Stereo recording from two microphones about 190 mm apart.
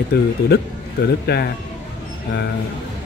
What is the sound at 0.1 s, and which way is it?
Speech, 60° left (ahead or behind).